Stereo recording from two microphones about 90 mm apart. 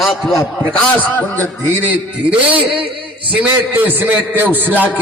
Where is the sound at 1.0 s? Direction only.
20° left (ahead or behind).